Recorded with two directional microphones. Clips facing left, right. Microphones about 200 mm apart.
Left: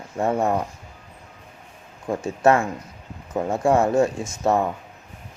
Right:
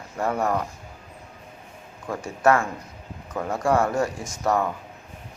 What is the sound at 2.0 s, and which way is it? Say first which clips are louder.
Speech: left 3 dB; 25° left (ahead or behind).